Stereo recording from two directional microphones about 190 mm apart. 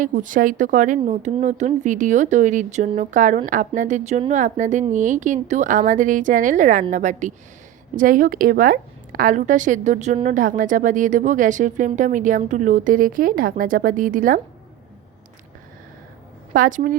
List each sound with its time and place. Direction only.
0.0 s a woman's voice: 45° right (ahead or behind)
16.5 s a woman's voice: 45° right (ahead or behind)